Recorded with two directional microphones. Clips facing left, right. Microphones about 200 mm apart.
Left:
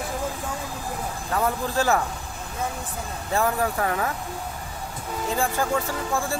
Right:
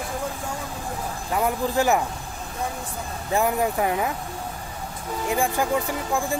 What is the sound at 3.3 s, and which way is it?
Speech, 15° right (ahead or behind).